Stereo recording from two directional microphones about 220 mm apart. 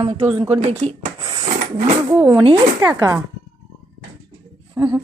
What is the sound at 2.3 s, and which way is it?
Speech, 20° right (ahead or behind).